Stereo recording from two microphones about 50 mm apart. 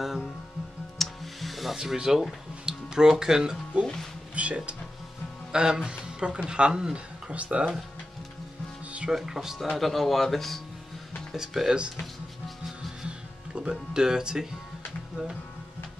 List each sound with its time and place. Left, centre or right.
0.9 s music: centre
2.6 s speech: centre
3.8 s speech: centre
4.4 s speech: right
5.5 s speech: centre
9.1 s speech: centre
9.8 s speech: centre
11.3 s speech: centre
13.6 s speech: centre